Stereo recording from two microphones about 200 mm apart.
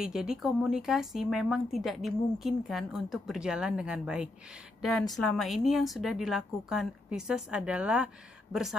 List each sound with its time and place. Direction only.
0.0 s a woman's voice: 5° right (ahead or behind)